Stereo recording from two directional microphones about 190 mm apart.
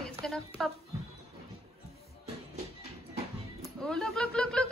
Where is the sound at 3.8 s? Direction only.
5° left (ahead or behind).